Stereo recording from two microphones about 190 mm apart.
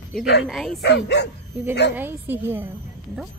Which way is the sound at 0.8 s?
60° left (ahead or behind).